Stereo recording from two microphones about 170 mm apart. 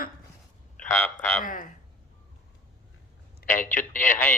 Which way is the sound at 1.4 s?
50° left (ahead or behind).